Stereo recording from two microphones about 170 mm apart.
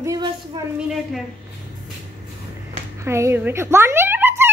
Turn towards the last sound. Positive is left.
turn(degrees=-15)  # may be behind; listen again after turning